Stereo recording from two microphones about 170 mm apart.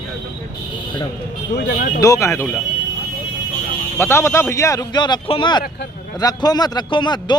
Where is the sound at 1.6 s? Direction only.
60° left (ahead or behind).